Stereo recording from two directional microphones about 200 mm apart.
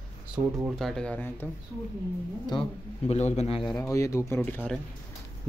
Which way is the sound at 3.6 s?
Centre (ahead or behind).